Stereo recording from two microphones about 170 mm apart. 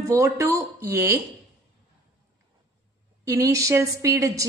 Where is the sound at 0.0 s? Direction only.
15° right (ahead or behind).